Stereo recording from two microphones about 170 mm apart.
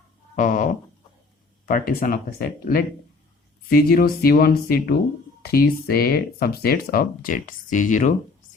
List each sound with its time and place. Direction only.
0.3 s speech: 50° left (ahead or behind)